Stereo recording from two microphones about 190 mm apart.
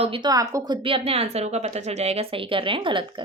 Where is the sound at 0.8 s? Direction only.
30° right (ahead or behind).